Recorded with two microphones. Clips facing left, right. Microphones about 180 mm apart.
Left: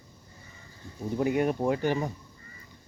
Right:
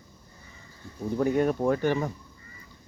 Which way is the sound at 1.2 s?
15° left (ahead or behind).